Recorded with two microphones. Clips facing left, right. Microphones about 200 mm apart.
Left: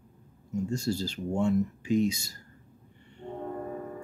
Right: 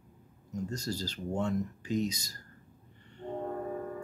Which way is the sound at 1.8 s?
40° right (ahead or behind).